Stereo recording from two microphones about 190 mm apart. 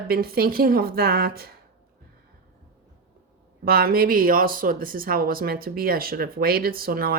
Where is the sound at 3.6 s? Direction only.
50° right (ahead or behind).